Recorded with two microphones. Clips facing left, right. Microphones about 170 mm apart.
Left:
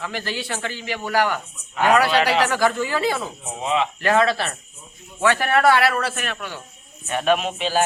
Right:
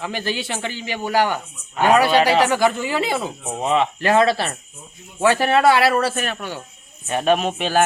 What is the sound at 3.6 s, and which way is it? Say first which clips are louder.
Speech: right 3 dB; 45° right (ahead or behind).